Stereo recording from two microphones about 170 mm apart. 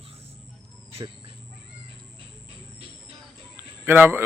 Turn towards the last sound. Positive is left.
turn(degrees=-10)  # may be behind; listen again after turning